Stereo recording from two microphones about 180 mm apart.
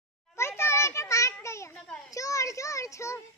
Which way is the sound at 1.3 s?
15° left (ahead or behind).